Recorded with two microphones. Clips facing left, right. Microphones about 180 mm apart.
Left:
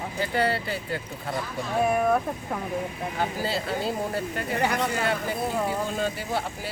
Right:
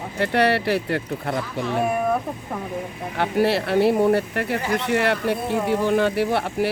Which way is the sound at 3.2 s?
70° right (ahead or behind).